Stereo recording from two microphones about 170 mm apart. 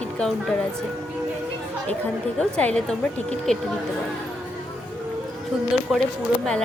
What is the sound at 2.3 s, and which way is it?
Speech, 5° left (ahead or behind).